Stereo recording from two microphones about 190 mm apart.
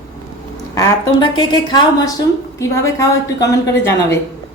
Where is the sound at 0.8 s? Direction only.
25° left (ahead or behind).